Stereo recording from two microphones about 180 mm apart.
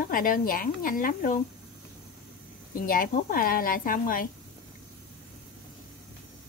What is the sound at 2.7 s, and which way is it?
Speech, 50° left (ahead or behind).